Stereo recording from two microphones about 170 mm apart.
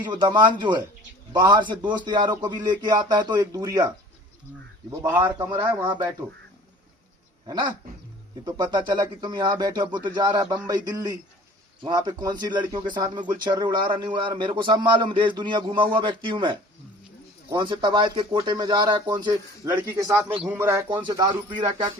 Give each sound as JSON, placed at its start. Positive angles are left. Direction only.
{"t": 0.0, "sound": "a man's voice", "side_deg": -25}
{"t": 7.4, "sound": "dog", "side_deg": -25}
{"t": 8.4, "sound": "a man's voice", "side_deg": -25}
{"t": 20.8, "sound": "speech", "side_deg": -25}